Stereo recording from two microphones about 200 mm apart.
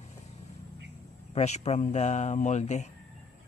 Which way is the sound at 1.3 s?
35° left (ahead or behind).